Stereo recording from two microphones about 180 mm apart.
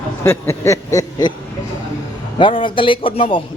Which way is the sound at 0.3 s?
15° left (ahead or behind).